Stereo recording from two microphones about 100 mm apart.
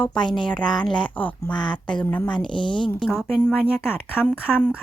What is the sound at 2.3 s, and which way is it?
Speech, 55° left (ahead or behind).